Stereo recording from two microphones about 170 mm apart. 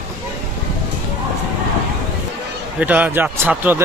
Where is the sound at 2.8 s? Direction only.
10° right (ahead or behind).